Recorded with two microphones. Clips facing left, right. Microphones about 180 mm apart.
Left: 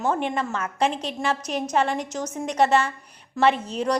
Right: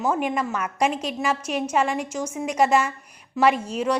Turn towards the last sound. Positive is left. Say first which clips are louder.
# right 1 dB
turn(degrees=-10)  # may be behind; listen again after turning